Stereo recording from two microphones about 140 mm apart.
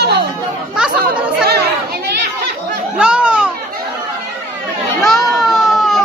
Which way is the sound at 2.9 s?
5° right (ahead or behind).